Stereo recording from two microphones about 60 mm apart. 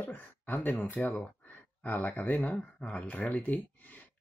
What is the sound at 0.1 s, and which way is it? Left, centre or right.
Speech, left.